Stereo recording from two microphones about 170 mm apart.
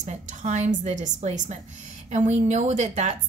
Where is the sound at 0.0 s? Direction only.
45° right (ahead or behind).